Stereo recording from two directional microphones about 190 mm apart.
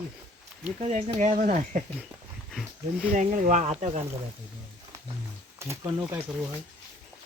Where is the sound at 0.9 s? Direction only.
35° right (ahead or behind).